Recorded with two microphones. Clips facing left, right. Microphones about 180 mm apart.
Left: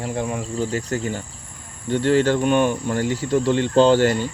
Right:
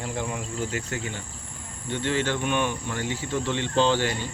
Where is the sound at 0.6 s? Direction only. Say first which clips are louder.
Left 8 dB; 35° left (ahead or behind).